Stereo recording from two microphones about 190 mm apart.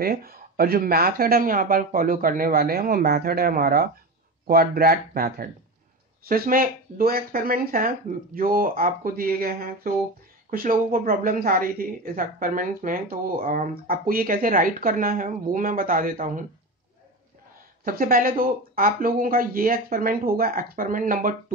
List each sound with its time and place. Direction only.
0.0 s a woman's voice: 50° right (ahead or behind)
17.8 s a woman's voice: 50° right (ahead or behind)